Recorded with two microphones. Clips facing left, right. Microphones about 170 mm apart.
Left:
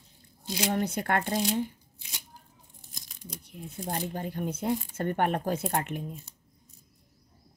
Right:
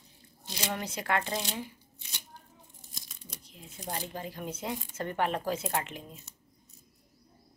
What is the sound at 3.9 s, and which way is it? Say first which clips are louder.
Speech: left 4 dB; 55° left (ahead or behind).